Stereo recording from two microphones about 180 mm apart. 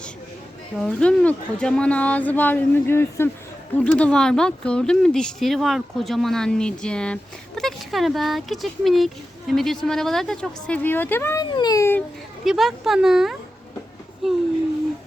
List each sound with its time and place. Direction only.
0.8 s speech: 5° left (ahead or behind)
12.5 s speech: centre (ahead or behind)